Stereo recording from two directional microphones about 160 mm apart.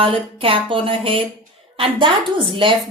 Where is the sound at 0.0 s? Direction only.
35° right (ahead or behind).